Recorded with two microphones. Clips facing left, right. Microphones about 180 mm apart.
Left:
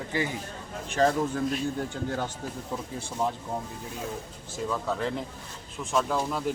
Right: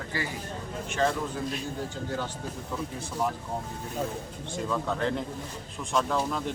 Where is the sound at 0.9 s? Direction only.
35° left (ahead or behind).